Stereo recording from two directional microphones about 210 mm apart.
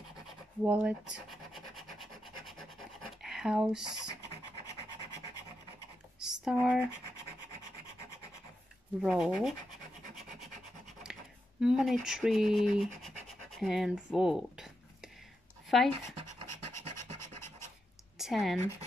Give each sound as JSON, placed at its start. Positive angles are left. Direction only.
{"t": 0.7, "sound": "rub", "side_deg": -5}
{"t": 3.2, "sound": "speech", "side_deg": 0}
{"t": 6.1, "sound": "a sound", "side_deg": -5}
{"t": 9.0, "sound": "speech", "side_deg": 0}
{"t": 11.6, "sound": "speech", "side_deg": 0}
{"t": 13.0, "sound": "rub", "side_deg": 0}
{"t": 15.7, "sound": "speech", "side_deg": 0}
{"t": 16.4, "sound": "scratch", "side_deg": 15}
{"t": 18.1, "sound": "a sound", "side_deg": 0}